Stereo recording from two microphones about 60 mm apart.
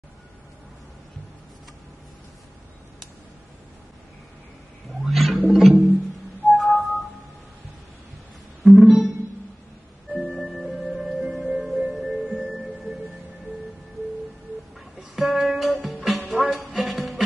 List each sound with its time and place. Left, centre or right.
5.0 s a sound: centre
5.5 s music: centre
6.5 s whistling: centre
8.6 s music: centre
10.1 s music: centre
15.0 s music: centre